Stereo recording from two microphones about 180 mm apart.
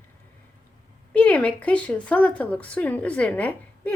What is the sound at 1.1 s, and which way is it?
Speech, 10° left (ahead or behind).